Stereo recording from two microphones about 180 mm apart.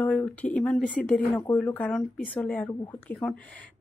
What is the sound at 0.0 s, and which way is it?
A woman's voice, 10° left (ahead or behind).